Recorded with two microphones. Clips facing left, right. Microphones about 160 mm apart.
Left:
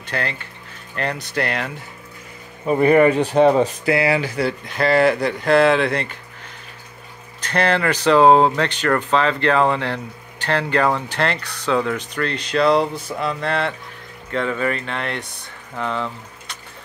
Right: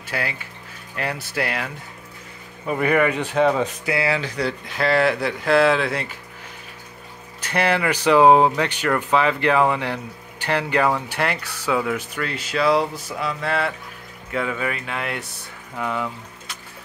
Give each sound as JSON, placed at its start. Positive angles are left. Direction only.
{"t": 0.0, "sound": "speech", "side_deg": -10}
{"t": 2.6, "sound": "speech", "side_deg": 25}
{"t": 3.9, "sound": "speech", "side_deg": 15}
{"t": 7.4, "sound": "speech", "side_deg": -10}